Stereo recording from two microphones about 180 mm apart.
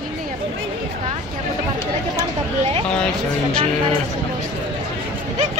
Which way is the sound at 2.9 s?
5° left (ahead or behind).